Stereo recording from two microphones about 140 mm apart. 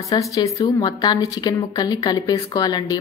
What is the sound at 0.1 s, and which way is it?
A woman's voice, 30° left (ahead or behind).